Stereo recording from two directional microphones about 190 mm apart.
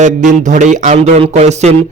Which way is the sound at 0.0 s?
40° right (ahead or behind).